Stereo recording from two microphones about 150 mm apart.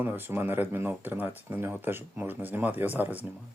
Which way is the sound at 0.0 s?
15° right (ahead or behind).